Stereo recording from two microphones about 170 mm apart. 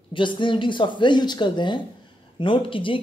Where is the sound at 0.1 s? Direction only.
30° left (ahead or behind).